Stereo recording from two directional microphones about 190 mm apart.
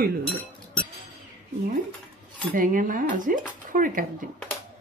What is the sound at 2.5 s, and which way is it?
Speech, 45° right (ahead or behind).